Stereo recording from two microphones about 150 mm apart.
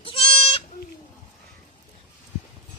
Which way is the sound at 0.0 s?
35° left (ahead or behind).